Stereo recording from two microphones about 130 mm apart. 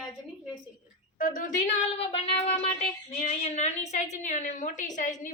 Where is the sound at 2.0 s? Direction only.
45° left (ahead or behind).